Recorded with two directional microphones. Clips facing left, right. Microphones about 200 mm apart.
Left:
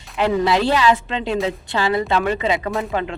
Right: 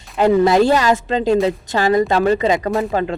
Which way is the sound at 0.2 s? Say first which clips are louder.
Right 5 dB; 45° right (ahead or behind).